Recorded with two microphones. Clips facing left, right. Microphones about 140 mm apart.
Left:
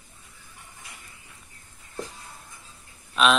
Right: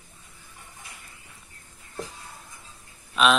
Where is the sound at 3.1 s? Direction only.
Centre (ahead or behind).